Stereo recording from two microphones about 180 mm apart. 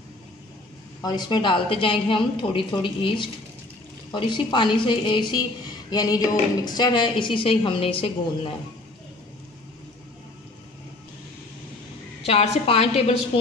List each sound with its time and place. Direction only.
1.0 s a woman's voice: 25° left (ahead or behind)
12.3 s a woman's voice: 35° left (ahead or behind)